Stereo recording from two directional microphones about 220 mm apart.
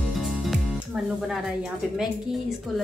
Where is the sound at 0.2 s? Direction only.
Centre (ahead or behind).